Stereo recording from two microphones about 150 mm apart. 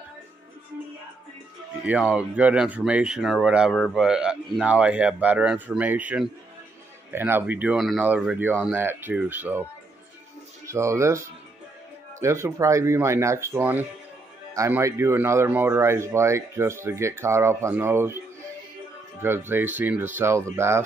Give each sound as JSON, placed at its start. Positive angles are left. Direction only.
{"t": 1.9, "sound": "speech", "side_deg": -5}
{"t": 10.7, "sound": "speech", "side_deg": -20}
{"t": 19.2, "sound": "speech", "side_deg": -15}